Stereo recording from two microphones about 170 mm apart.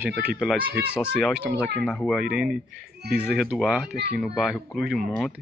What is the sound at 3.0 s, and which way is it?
Speech, 70° right (ahead or behind).